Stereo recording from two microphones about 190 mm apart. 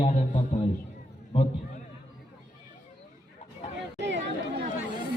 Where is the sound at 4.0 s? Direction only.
70° right (ahead or behind).